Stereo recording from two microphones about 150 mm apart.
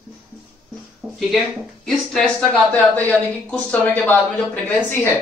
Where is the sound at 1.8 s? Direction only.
5° left (ahead or behind).